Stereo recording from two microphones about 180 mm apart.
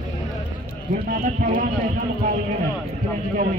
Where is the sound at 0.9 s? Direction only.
45° right (ahead or behind).